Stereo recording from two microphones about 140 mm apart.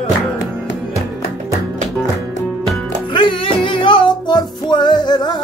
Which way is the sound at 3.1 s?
35° left (ahead or behind).